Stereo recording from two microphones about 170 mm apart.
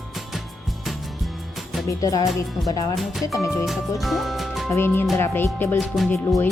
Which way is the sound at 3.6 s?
Centre (ahead or behind).